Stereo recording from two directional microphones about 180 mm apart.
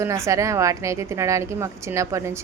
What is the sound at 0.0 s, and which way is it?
A woman's voice, 15° right (ahead or behind).